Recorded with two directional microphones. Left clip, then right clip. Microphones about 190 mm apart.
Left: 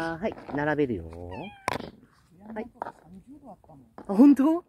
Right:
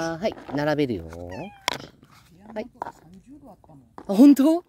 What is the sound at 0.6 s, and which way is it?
Speech, 90° right.